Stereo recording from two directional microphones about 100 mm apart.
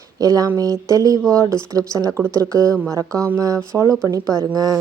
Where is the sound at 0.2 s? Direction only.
40° right (ahead or behind).